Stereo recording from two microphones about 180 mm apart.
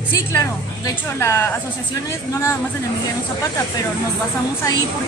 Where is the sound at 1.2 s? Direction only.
15° left (ahead or behind).